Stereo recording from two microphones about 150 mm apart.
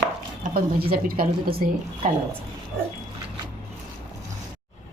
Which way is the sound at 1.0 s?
75° right (ahead or behind).